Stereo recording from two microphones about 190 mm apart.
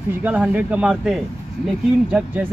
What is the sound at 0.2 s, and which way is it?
Speech, 10° right (ahead or behind).